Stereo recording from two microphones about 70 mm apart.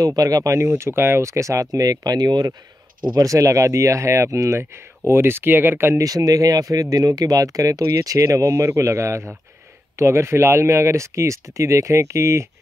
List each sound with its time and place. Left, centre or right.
0.0 s speech: right
2.1 s speech: right
3.2 s speech: right
5.9 s speech: right